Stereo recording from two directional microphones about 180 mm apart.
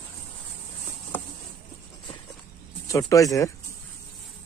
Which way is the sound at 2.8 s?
20° left (ahead or behind).